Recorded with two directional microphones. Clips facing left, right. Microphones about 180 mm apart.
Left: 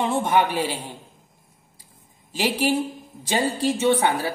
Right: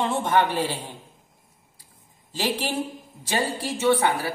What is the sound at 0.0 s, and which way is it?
Speech, 10° left (ahead or behind).